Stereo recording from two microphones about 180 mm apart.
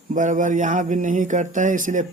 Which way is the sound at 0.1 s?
45° right (ahead or behind).